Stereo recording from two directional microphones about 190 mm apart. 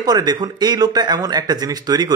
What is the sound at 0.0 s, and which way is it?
Speech, 20° right (ahead or behind).